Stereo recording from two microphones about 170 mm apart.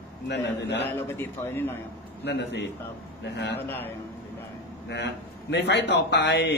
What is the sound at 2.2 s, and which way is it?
Speech, 90° left.